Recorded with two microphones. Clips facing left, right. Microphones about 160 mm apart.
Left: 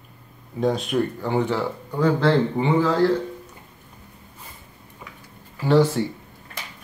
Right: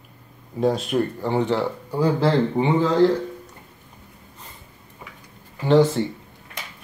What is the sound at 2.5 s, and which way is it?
Speech, 20° right (ahead or behind).